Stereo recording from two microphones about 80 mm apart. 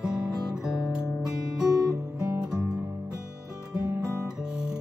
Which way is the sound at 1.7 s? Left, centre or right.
Right.